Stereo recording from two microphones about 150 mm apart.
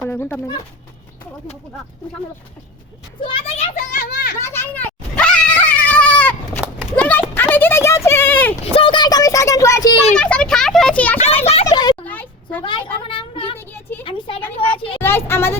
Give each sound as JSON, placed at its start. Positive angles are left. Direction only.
{"t": 0.1, "sound": "speech", "side_deg": 15}
{"t": 3.2, "sound": "a child's voice", "side_deg": 35}
{"t": 3.8, "sound": "a child's voice", "side_deg": 65}
{"t": 4.4, "sound": "dog", "side_deg": 15}
{"t": 6.9, "sound": "a sound", "side_deg": 10}
{"t": 8.5, "sound": "speech", "side_deg": 40}
{"t": 10.2, "sound": "a child's voice", "side_deg": 5}
{"t": 11.2, "sound": "speech", "side_deg": 45}
{"t": 11.6, "sound": "a sound", "side_deg": 25}
{"t": 12.0, "sound": "a sound", "side_deg": 10}
{"t": 12.6, "sound": "a child's voice", "side_deg": 35}
{"t": 15.0, "sound": "speech", "side_deg": 15}